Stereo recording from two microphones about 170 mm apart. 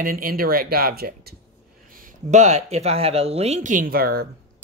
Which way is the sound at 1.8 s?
55° right (ahead or behind).